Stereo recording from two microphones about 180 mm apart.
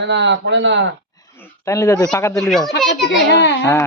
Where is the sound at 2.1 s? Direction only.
15° left (ahead or behind).